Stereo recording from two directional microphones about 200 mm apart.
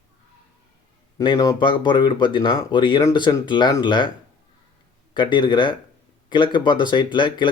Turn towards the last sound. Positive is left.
turn(degrees=25)  # may be behind; listen again after turning